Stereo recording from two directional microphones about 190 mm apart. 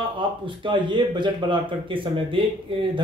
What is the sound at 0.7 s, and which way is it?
Speech, 25° right (ahead or behind).